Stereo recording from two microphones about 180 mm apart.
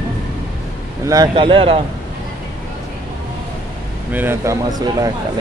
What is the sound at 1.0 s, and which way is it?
Speech, 20° right (ahead or behind).